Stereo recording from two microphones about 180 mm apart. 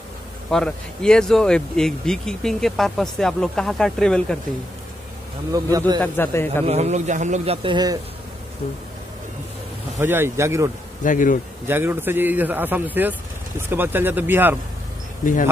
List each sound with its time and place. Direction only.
0.5 s speech: 5° left (ahead or behind)
5.5 s speech: 20° right (ahead or behind)
5.9 s a man's voice: 10° left (ahead or behind)
6.6 s a man's voice: 35° right (ahead or behind)
7.6 s speech: 25° right (ahead or behind)
9.9 s a man's voice: 15° right (ahead or behind)
11.1 s speech: 45° left (ahead or behind)
11.6 s a man's voice: 10° right (ahead or behind)